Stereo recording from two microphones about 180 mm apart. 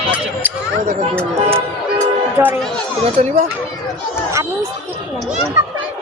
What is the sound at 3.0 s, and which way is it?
Speech, 40° right (ahead or behind).